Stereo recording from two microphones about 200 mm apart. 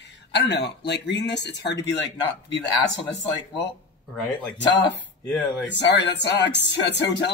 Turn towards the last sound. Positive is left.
turn(degrees=60)  # may be behind; listen again after turning